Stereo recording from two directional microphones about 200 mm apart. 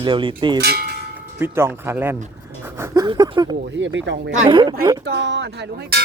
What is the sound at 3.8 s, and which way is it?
Speech, 65° right (ahead or behind).